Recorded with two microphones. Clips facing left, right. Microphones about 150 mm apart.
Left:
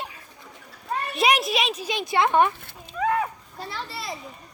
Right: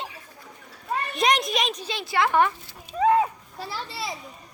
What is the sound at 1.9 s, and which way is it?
Speech, 20° left (ahead or behind).